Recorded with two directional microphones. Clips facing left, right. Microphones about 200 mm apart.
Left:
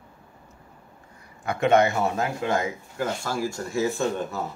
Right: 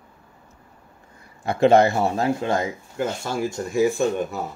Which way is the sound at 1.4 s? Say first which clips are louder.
Right 4 dB; 30° right (ahead or behind).